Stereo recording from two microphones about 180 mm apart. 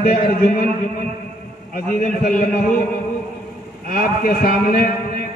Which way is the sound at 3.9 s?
50° left (ahead or behind).